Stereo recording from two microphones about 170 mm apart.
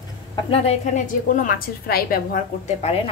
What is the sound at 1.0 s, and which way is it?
A woman's voice, 50° left (ahead or behind).